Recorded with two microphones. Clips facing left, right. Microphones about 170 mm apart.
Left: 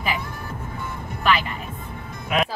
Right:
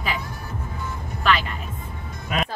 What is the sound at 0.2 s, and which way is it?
Music, 55° left (ahead or behind).